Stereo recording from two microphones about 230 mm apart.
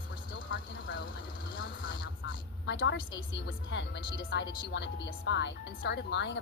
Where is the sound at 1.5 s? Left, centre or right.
Left.